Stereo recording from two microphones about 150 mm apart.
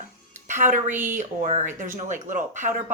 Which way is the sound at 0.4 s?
55° right (ahead or behind).